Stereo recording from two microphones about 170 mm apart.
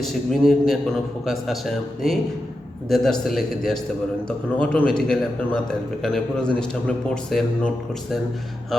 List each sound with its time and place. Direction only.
0.0 s a man's voice: centre (ahead or behind)